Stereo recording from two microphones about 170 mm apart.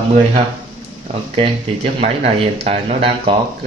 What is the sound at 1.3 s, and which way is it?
Speech, 35° right (ahead or behind).